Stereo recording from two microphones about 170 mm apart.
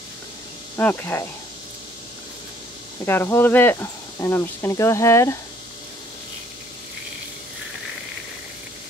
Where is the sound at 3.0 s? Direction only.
15° left (ahead or behind).